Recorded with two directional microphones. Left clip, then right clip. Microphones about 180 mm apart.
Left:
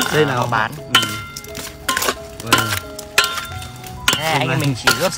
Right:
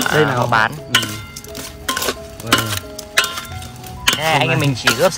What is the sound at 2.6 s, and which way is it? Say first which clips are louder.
Music: left 2 dB; 15° left (ahead or behind).